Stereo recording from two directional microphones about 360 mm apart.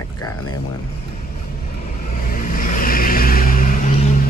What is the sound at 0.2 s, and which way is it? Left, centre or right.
Vehicle, centre.